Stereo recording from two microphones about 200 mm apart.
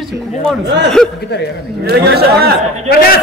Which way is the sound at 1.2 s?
55° left (ahead or behind).